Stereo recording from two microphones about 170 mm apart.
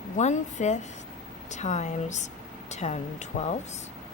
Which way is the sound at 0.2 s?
45° left (ahead or behind).